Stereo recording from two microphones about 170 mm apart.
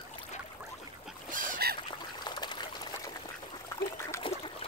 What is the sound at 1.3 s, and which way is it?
Boat, 50° right (ahead or behind).